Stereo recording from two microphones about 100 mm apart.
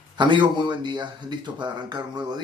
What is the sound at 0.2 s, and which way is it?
Speech, 50° right (ahead or behind).